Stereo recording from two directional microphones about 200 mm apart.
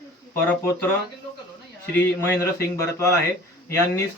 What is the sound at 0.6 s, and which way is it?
Speech, 10° left (ahead or behind).